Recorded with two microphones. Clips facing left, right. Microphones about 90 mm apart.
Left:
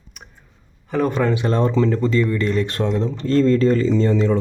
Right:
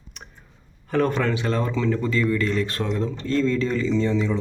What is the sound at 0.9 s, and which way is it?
Speech, 10° left (ahead or behind).